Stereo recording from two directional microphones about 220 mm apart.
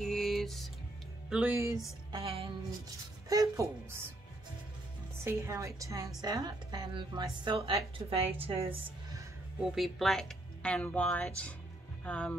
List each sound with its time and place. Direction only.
0.0 s music: centre (ahead or behind)
1.3 s speech: 5° right (ahead or behind)
2.1 s music: 25° right (ahead or behind)
3.3 s speech: 15° right (ahead or behind)
5.2 s a woman's voice: 10° right (ahead or behind)
9.6 s speech: centre (ahead or behind)